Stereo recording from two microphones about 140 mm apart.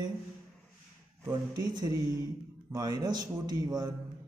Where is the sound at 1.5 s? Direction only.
30° right (ahead or behind).